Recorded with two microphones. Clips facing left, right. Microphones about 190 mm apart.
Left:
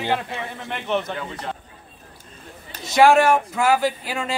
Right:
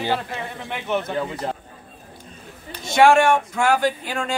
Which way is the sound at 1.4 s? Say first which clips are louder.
Right 4 dB; 35° right (ahead or behind).